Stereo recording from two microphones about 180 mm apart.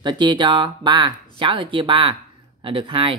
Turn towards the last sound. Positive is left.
turn(degrees=-30)  # may be behind; listen again after turning